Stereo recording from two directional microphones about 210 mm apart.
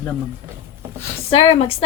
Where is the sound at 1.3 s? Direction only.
25° left (ahead or behind).